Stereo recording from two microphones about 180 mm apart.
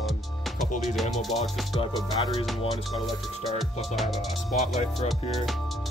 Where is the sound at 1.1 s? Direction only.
Centre (ahead or behind).